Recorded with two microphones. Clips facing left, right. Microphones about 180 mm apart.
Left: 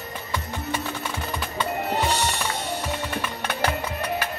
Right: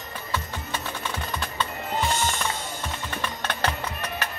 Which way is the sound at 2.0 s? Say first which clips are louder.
Left 2 dB; 75° left (ahead or behind).